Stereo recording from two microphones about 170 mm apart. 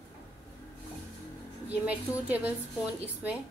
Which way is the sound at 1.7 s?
10° right (ahead or behind).